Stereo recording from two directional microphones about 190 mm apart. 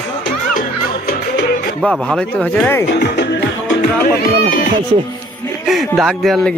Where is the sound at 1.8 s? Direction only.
Centre (ahead or behind).